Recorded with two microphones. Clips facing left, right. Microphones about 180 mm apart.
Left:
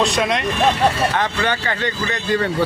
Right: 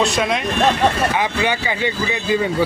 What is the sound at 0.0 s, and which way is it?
Speech, centre (ahead or behind).